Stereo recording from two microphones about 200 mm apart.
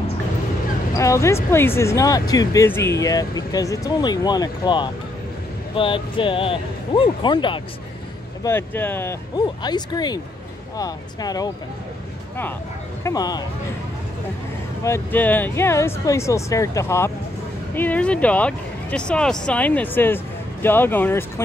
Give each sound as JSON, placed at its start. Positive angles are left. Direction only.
{"t": 0.9, "sound": "speech", "side_deg": 15}
{"t": 8.5, "sound": "speech", "side_deg": 10}
{"t": 9.6, "sound": "speech", "side_deg": 20}
{"t": 13.0, "sound": "speech", "side_deg": 20}
{"t": 14.8, "sound": "speech", "side_deg": 10}